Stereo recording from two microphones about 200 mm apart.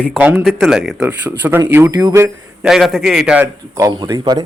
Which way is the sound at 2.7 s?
Centre (ahead or behind).